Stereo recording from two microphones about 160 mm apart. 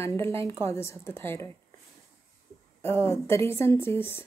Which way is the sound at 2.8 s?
15° left (ahead or behind).